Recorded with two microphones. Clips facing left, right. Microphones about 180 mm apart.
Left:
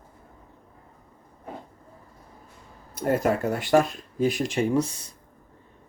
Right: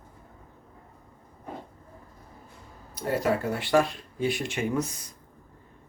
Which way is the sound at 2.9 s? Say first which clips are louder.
Left 3 dB; 50° left (ahead or behind).